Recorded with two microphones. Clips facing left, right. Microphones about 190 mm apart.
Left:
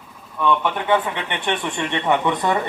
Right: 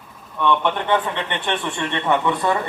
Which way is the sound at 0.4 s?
10° left (ahead or behind).